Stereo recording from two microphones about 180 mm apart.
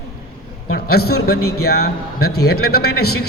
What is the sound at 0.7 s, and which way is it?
A man's voice, 60° left (ahead or behind).